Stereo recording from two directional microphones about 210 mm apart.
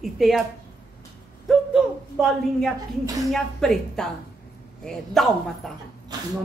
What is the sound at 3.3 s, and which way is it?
Speech, centre (ahead or behind).